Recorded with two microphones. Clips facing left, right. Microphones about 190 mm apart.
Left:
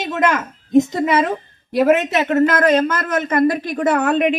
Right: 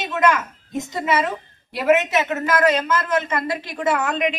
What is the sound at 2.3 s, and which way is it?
A woman's voice, 55° left (ahead or behind).